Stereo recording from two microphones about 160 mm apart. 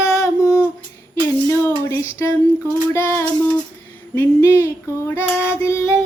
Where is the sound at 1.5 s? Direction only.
15° left (ahead or behind).